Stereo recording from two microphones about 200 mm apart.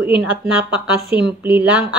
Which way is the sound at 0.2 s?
5° right (ahead or behind).